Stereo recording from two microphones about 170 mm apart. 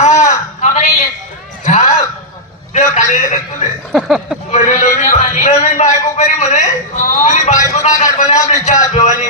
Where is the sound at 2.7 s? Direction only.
45° left (ahead or behind).